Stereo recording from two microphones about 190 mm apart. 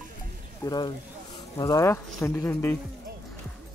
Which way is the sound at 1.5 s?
20° left (ahead or behind).